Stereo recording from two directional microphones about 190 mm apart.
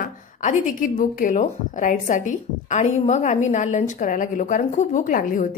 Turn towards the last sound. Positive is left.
turn(degrees=45)  # may be behind; listen again after turning